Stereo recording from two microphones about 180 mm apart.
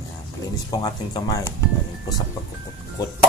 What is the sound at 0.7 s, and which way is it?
Speech, 20° left (ahead or behind).